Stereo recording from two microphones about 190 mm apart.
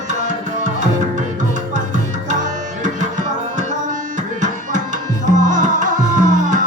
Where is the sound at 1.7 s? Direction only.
40° right (ahead or behind).